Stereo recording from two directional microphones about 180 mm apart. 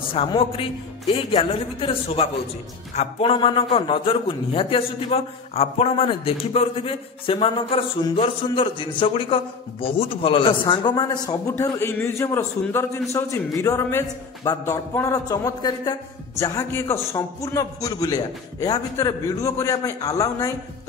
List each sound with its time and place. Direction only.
0.1 s a man's voice: 30° left (ahead or behind)